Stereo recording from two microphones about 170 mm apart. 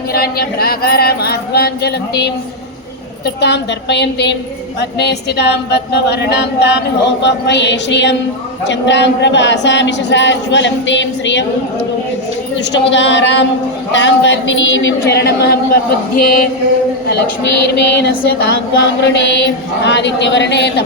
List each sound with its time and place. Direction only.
0.1 s speech: 65° left (ahead or behind)
3.2 s speech: 85° left
4.8 s a sound: 80° left
8.6 s speech: 90° left
12.7 s speech: 90° left
15.1 s speech: 75° left (ahead or behind)
17.1 s speech: 90° left